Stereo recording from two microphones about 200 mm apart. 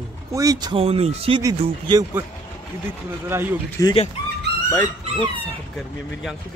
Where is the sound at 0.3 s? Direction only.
15° right (ahead or behind).